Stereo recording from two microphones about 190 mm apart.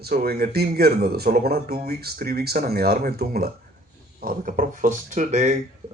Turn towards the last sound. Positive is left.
turn(degrees=-40)  # may be behind; listen again after turning